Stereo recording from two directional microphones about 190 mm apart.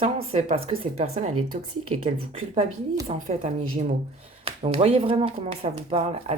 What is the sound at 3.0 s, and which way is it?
Speech, 35° right (ahead or behind).